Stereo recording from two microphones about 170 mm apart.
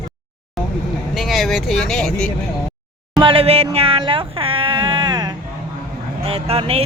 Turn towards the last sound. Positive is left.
turn(degrees=-35)  # may be behind; listen again after turning